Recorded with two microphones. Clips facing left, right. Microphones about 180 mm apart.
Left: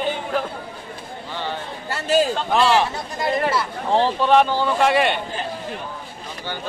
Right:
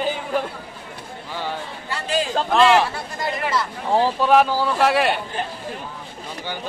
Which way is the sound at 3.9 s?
5° right (ahead or behind).